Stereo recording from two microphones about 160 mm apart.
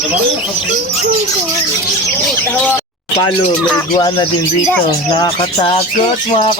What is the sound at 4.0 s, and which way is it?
Speech, 25° left (ahead or behind).